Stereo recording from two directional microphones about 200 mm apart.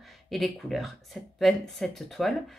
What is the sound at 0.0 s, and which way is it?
Speech, centre (ahead or behind).